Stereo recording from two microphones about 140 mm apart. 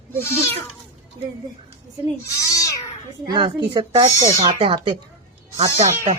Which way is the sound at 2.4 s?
25° left (ahead or behind).